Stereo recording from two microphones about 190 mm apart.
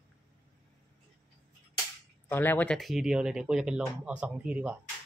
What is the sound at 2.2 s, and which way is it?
Speech, 10° left (ahead or behind).